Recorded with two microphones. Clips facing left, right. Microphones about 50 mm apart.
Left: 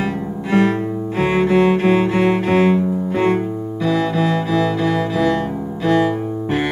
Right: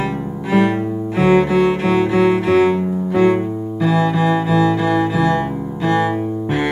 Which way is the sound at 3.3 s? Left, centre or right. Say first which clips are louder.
Right 1 dB; centre.